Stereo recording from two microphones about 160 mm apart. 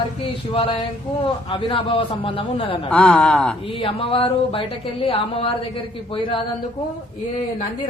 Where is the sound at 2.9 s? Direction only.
5° left (ahead or behind).